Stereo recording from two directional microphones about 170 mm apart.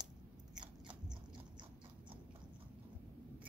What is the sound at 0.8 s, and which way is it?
Biting, 25° right (ahead or behind).